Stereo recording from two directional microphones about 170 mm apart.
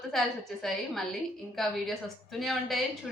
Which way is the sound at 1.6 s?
Centre (ahead or behind).